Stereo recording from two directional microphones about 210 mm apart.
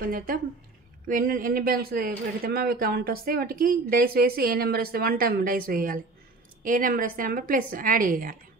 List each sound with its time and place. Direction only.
0.0 s a woman's voice: 45° right (ahead or behind)